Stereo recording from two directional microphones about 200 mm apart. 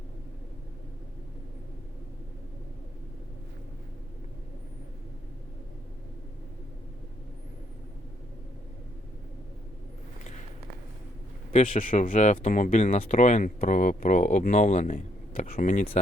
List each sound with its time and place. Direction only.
11.5 s speech: 40° left (ahead or behind)